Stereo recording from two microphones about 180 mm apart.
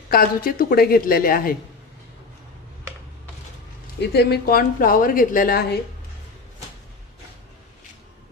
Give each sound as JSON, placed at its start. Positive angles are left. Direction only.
{"t": 0.1, "sound": "a woman's voice", "side_deg": 55}
{"t": 4.1, "sound": "a woman's voice", "side_deg": 65}